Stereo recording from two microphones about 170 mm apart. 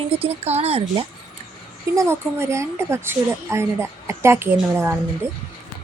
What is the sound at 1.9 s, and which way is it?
A woman's voice, 15° right (ahead or behind).